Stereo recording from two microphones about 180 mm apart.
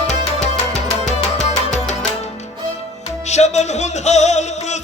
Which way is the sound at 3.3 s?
40° left (ahead or behind).